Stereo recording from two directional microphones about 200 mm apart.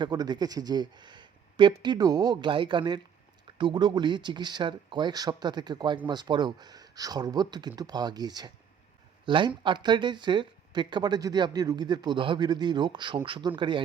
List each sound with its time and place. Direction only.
0.0 s speech: 20° right (ahead or behind)